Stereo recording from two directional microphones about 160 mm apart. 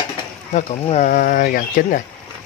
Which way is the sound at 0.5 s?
45° left (ahead or behind).